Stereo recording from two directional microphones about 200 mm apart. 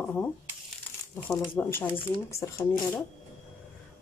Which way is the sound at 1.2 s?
10° left (ahead or behind).